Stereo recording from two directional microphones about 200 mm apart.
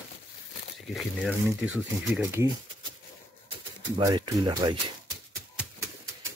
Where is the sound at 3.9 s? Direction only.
20° right (ahead or behind).